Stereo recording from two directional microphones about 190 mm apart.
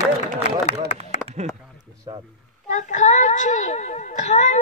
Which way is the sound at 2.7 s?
40° left (ahead or behind).